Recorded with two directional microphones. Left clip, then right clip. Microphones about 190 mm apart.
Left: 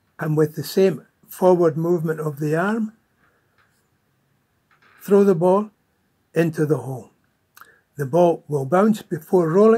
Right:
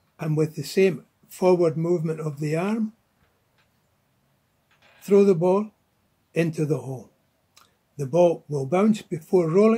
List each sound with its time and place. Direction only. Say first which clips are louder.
0.2 s speech: left 5 dB; 15° left (ahead or behind)
5.0 s speech: left 2 dB; 15° left (ahead or behind)